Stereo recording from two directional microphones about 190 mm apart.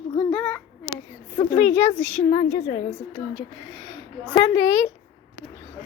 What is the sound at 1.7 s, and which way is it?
Speech, 35° left (ahead or behind).